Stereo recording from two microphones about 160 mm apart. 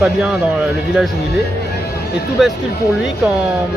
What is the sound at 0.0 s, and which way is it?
Speech, centre (ahead or behind).